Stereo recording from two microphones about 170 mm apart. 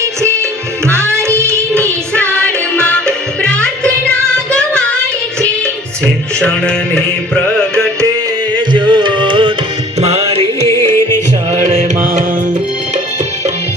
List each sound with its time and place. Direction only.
0.9 s music: 15° right (ahead or behind)
1.8 s music: 10° left (ahead or behind)
6.4 s music: 5° left (ahead or behind)
8.7 s music: 25° right (ahead or behind)
10.7 s music: 15° left (ahead or behind)